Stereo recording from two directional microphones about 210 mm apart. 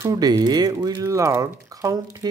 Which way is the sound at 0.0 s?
15° right (ahead or behind).